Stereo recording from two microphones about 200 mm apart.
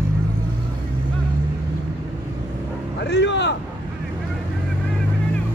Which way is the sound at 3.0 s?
60° left (ahead or behind).